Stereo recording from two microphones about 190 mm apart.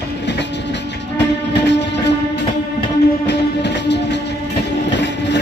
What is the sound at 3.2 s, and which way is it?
Music, 65° left (ahead or behind).